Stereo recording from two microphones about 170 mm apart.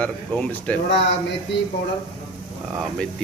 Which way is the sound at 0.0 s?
10° left (ahead or behind).